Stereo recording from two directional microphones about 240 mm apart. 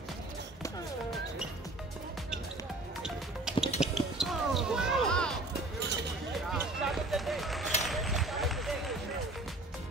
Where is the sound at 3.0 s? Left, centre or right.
Centre.